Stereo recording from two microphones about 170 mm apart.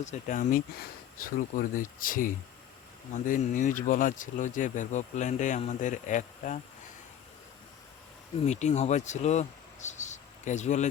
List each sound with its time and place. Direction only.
0.0 s speech: 45° left (ahead or behind)
8.4 s speech: 40° left (ahead or behind)